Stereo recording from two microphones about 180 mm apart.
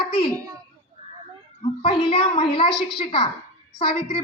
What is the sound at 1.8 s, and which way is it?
A woman's voice, 30° left (ahead or behind).